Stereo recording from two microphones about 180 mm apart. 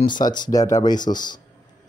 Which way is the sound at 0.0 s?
25° left (ahead or behind).